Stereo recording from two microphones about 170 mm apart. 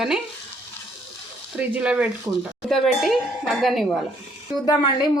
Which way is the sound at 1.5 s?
5° right (ahead or behind).